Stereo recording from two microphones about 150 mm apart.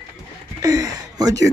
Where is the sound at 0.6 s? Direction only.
20° right (ahead or behind).